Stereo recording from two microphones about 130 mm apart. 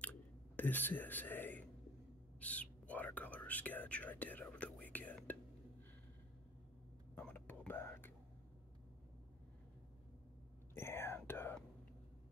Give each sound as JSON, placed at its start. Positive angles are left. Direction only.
{"t": 0.6, "sound": "speech", "side_deg": 15}
{"t": 2.4, "sound": "whispering", "side_deg": 10}
{"t": 7.2, "sound": "whispering", "side_deg": 15}
{"t": 10.7, "sound": "whispering", "side_deg": 20}